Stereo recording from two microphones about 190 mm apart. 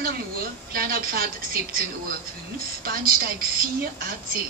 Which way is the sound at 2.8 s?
50° right (ahead or behind).